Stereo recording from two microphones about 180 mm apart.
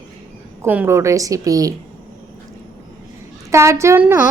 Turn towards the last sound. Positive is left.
turn(degrees=-10)  # may be behind; listen again after turning